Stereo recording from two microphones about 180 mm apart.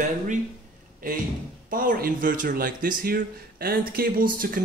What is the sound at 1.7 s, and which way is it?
Speech, 50° right (ahead or behind).